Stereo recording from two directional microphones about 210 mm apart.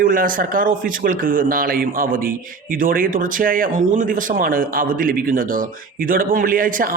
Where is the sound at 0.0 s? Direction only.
40° right (ahead or behind).